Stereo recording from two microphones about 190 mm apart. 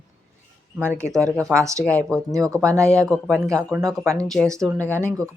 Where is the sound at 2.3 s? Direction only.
15° right (ahead or behind).